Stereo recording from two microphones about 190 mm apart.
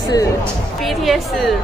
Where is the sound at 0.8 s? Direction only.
Centre (ahead or behind).